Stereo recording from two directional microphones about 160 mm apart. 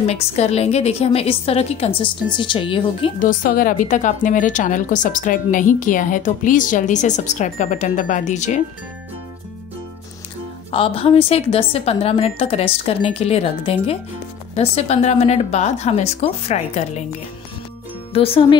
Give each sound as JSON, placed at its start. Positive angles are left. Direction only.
{"t": 0.0, "sound": "a woman's voice", "side_deg": 40}
{"t": 3.2, "sound": "a woman's voice", "side_deg": 60}
{"t": 10.7, "sound": "a woman's voice", "side_deg": 35}
{"t": 18.1, "sound": "a woman's voice", "side_deg": 35}